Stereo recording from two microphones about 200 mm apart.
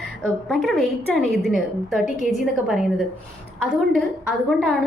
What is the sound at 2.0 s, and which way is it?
Speech, 40° left (ahead or behind).